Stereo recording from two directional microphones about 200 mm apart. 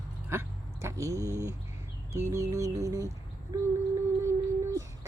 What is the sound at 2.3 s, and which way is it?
Music, 15° right (ahead or behind).